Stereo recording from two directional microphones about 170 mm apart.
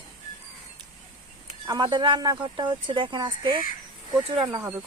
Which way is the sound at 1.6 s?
25° right (ahead or behind).